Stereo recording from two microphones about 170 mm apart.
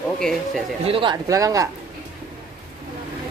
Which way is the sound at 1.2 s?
20° right (ahead or behind).